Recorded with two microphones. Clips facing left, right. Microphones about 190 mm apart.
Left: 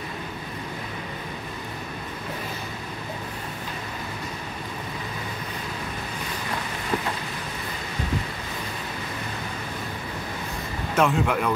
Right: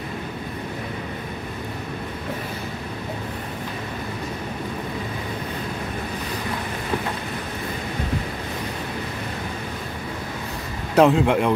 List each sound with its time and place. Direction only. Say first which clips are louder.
11.0 s speech: right 6 dB; 30° right (ahead or behind)